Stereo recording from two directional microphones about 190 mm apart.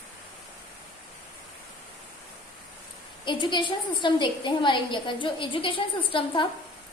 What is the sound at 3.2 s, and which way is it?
A woman's voice, 25° left (ahead or behind).